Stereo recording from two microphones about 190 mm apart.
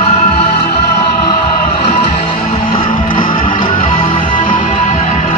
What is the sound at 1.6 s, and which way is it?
Music, 30° left (ahead or behind).